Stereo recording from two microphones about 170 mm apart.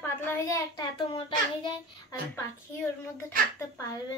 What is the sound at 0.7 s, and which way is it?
Speech, 30° left (ahead or behind).